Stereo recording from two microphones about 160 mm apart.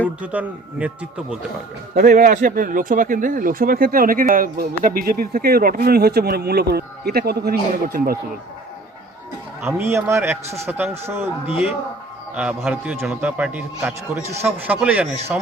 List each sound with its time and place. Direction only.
0.2 s a man's voice: 10° right (ahead or behind)
2.0 s speech: 55° right (ahead or behind); by 7.5 s 80° right
7.9 s speech: 65° right (ahead or behind)
9.6 s a man's voice: 15° right (ahead or behind)